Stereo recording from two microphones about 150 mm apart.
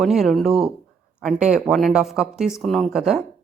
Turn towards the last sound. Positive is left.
turn(degrees=0)  # may be behind; listen again after turning